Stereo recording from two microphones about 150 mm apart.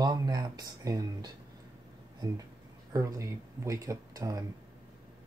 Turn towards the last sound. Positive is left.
turn(degrees=-20)  # may be behind; listen again after turning